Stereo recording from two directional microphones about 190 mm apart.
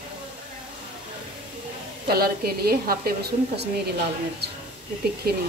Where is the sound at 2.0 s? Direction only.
55° right (ahead or behind).